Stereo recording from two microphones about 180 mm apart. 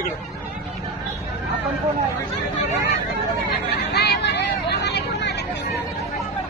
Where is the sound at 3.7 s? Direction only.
65° left (ahead or behind).